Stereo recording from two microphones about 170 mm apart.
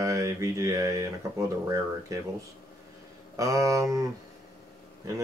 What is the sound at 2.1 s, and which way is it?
Speech, 20° right (ahead or behind).